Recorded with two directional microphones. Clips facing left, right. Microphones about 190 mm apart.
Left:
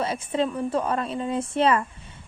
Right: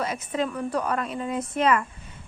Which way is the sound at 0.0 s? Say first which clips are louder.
Left 2 dB; 30° left (ahead or behind).